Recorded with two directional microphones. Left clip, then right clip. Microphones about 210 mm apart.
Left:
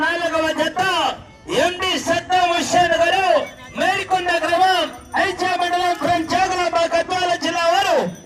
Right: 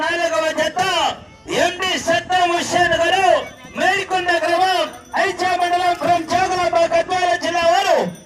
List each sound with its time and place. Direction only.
0.0 s music: 20° right (ahead or behind)